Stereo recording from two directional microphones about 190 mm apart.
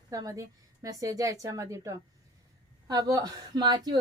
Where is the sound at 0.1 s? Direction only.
15° right (ahead or behind).